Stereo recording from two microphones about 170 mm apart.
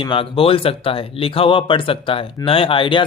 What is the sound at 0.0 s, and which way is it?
Speech, 30° left (ahead or behind).